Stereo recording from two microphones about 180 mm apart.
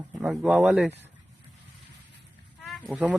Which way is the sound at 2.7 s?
5° right (ahead or behind).